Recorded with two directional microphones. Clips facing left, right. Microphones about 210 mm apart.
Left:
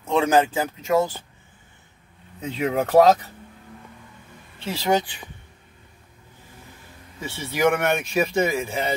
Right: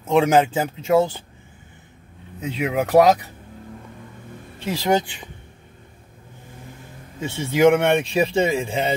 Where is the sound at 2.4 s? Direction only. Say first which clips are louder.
Right 1 dB; 10° right (ahead or behind).